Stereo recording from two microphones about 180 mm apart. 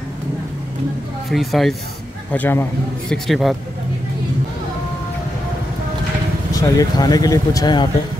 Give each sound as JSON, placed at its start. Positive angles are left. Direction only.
{"t": 1.3, "sound": "speech", "side_deg": 0}
{"t": 2.3, "sound": "a man's voice", "side_deg": 10}
{"t": 3.3, "sound": "speech", "side_deg": 0}
{"t": 6.5, "sound": "speech", "side_deg": 20}